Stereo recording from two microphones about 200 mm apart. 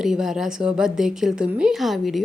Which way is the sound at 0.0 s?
Centre (ahead or behind).